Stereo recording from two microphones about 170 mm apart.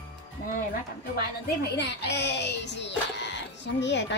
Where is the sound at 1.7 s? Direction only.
85° left.